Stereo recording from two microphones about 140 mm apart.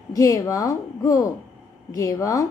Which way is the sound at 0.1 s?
25° left (ahead or behind).